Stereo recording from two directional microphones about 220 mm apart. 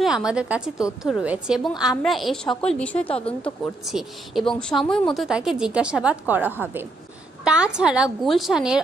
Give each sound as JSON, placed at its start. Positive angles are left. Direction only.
{"t": 0.0, "sound": "speech", "side_deg": -5}
{"t": 3.1, "sound": "speech", "side_deg": 25}
{"t": 3.4, "sound": "speech", "side_deg": 0}